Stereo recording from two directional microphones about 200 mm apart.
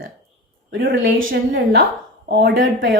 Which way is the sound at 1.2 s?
70° right (ahead or behind).